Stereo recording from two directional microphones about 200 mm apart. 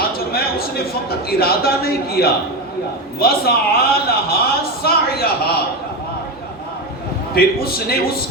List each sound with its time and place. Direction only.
0.0 s a sound: 50° left (ahead or behind)
1.3 s a man's voice: 50° left (ahead or behind)
7.3 s a man's voice: 50° left (ahead or behind)